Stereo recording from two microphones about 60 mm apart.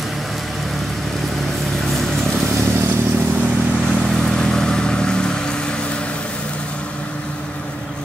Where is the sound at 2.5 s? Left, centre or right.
Right.